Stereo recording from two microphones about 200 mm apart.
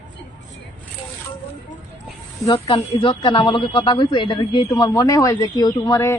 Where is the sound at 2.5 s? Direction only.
25° left (ahead or behind).